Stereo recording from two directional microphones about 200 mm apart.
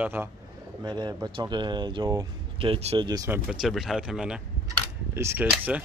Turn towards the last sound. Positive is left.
turn(degrees=-5)  # may be behind; listen again after turning